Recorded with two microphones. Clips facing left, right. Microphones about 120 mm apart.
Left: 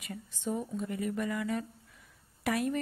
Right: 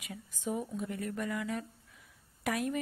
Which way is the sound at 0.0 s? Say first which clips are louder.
Left 2 dB; 5° right (ahead or behind).